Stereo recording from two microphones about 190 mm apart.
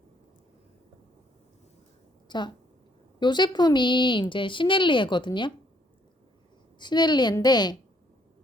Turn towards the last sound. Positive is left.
turn(degrees=20)  # may be behind; listen again after turning